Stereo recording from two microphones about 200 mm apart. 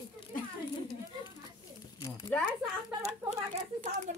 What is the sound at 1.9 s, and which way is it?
Speech, 15° left (ahead or behind).